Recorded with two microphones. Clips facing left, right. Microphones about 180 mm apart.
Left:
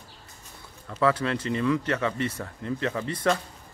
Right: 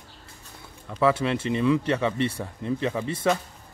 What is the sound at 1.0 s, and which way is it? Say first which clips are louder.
Speech: right 2 dB; 20° right (ahead or behind).